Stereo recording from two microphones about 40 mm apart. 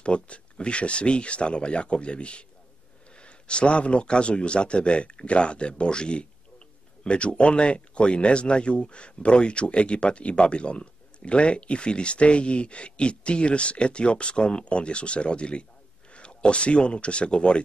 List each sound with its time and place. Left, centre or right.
0.0 s speech: left